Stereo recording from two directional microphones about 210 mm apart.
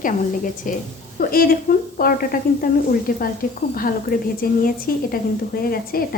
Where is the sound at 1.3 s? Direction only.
45° left (ahead or behind).